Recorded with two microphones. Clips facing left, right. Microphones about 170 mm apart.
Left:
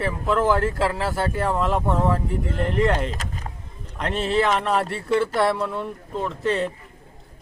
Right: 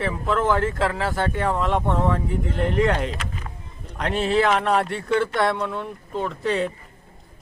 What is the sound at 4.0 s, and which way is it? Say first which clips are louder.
Speech: right 1 dB; centre (ahead or behind).